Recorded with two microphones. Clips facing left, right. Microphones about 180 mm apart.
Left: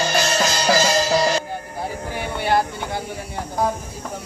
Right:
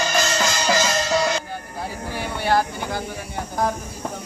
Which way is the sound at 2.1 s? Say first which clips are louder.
Even; 20° left (ahead or behind).